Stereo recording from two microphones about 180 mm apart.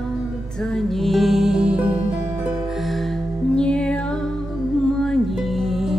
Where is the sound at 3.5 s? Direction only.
5° left (ahead or behind).